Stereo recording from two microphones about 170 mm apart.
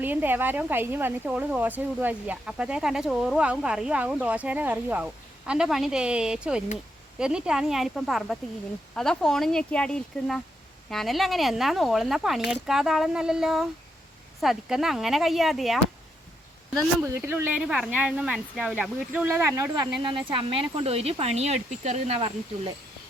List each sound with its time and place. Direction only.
0.0 s speech: 10° right (ahead or behind)
17.0 s speech: 15° right (ahead or behind)
20.0 s speech: 30° right (ahead or behind)